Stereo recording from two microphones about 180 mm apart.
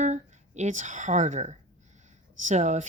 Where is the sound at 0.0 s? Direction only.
40° right (ahead or behind).